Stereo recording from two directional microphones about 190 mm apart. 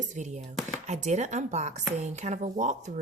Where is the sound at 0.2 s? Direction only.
40° right (ahead or behind).